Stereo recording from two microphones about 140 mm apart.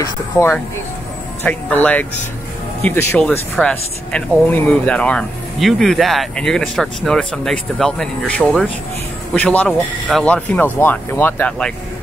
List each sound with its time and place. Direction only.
0.0 s speech: 20° left (ahead or behind)
3.2 s speech: 5° left (ahead or behind)